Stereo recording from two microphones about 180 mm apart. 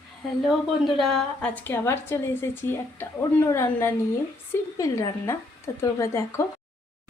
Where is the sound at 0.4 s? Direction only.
Centre (ahead or behind); by 6.4 s 15° left (ahead or behind).